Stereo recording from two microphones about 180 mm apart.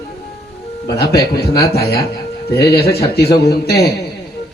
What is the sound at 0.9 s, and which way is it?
A man's voice, 60° left (ahead or behind).